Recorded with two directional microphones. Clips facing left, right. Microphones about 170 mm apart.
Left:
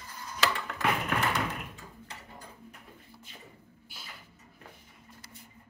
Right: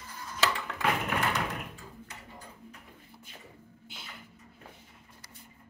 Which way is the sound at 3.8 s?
20° right (ahead or behind).